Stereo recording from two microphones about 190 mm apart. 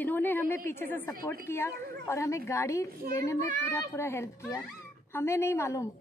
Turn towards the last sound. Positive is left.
turn(degrees=15)  # may be behind; listen again after turning